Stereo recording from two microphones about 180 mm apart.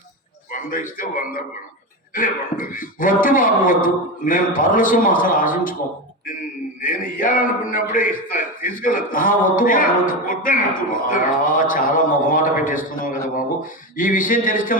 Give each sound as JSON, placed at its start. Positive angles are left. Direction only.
{"t": 0.5, "sound": "a man's voice", "side_deg": 50}
{"t": 6.8, "sound": "a man's voice", "side_deg": 50}